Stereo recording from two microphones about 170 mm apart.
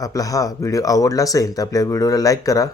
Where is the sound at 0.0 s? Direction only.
20° left (ahead or behind).